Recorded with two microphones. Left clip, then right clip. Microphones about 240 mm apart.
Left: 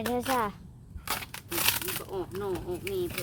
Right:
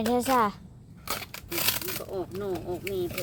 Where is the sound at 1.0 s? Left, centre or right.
Centre.